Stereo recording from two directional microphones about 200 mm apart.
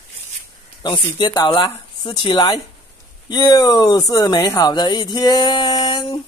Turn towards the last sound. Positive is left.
turn(degrees=20)  # may be behind; listen again after turning